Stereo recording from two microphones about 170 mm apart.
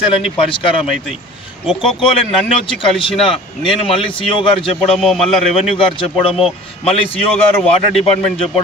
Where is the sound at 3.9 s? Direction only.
30° left (ahead or behind).